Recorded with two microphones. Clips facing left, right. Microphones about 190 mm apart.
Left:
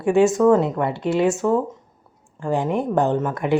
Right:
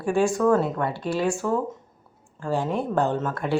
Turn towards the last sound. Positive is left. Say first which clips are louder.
# left 4 dB
turn(degrees=15)  # may be behind; listen again after turning